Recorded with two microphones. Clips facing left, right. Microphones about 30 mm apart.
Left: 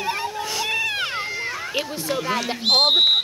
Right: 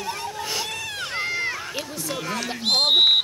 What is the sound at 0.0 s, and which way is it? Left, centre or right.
Cat, left.